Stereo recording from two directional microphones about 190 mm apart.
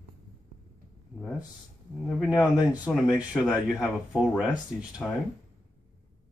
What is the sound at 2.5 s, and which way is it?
Speech, 5° right (ahead or behind).